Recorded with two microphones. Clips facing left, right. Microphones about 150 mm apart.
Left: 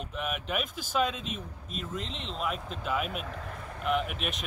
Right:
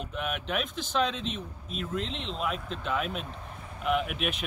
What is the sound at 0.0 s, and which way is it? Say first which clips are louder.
Speech: right 1 dB; centre (ahead or behind).